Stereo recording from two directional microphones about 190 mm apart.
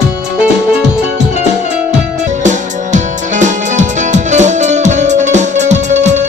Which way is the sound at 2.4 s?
40° right (ahead or behind).